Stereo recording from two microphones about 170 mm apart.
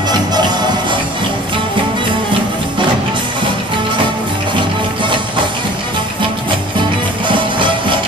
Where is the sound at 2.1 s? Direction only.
30° right (ahead or behind).